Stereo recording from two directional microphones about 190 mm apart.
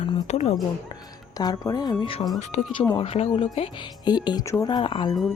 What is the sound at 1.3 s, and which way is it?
Speech, 20° left (ahead or behind).